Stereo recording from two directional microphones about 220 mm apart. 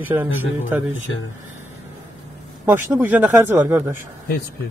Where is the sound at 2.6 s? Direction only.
10° right (ahead or behind).